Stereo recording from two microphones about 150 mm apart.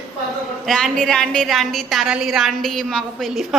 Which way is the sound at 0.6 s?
Centre (ahead or behind).